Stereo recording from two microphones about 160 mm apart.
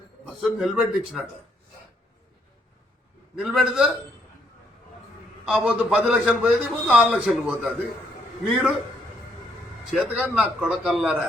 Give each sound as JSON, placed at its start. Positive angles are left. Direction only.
{"t": 0.3, "sound": "a man's voice", "side_deg": 0}
{"t": 3.3, "sound": "a man's voice", "side_deg": 0}
{"t": 5.5, "sound": "a man's voice", "side_deg": -5}
{"t": 9.9, "sound": "a man's voice", "side_deg": -5}